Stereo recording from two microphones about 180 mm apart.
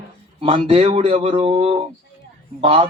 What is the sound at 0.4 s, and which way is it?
A man's voice, 30° right (ahead or behind).